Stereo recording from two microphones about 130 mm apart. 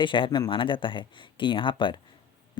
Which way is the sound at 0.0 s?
40° left (ahead or behind).